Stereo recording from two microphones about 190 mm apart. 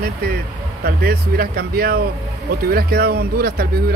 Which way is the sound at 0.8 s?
55° right (ahead or behind).